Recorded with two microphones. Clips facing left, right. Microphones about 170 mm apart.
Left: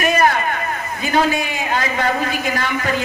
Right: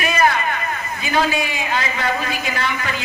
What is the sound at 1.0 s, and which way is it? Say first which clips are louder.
A man's voice: left 2 dB; 45° left (ahead or behind).